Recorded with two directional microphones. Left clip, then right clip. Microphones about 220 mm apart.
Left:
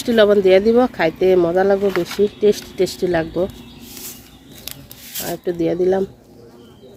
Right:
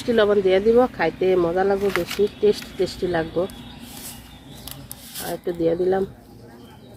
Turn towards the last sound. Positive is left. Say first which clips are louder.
# left 3 dB
turn(degrees=40)  # may be behind; listen again after turning